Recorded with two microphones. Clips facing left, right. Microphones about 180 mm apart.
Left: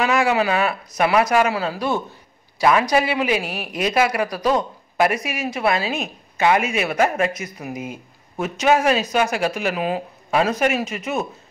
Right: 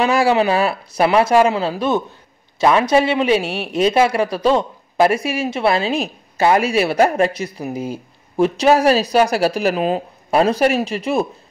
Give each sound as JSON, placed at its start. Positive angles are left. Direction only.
{"t": 0.0, "sound": "a man's voice", "side_deg": -30}